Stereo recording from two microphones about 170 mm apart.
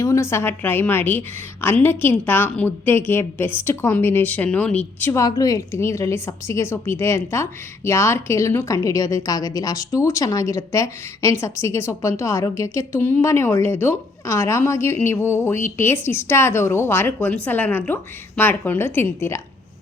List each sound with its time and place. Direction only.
0.0 s a woman's voice: 15° left (ahead or behind)